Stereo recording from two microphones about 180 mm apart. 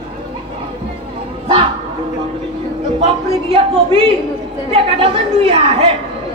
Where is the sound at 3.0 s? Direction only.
30° right (ahead or behind).